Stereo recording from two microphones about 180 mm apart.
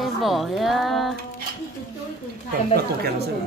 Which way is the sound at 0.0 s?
Centre (ahead or behind).